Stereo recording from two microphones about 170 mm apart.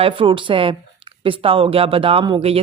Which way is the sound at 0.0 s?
30° right (ahead or behind).